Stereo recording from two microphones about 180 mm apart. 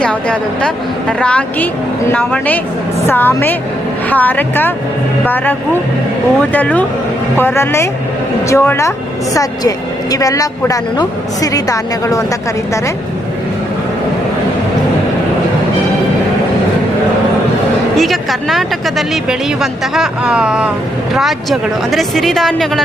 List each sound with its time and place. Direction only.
0.0 s a woman's voice: 5° left (ahead or behind)
17.9 s speech: centre (ahead or behind)